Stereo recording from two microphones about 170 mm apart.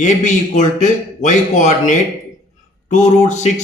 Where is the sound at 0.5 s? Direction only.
45° left (ahead or behind).